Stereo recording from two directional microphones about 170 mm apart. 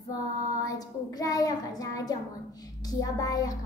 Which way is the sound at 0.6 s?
20° left (ahead or behind).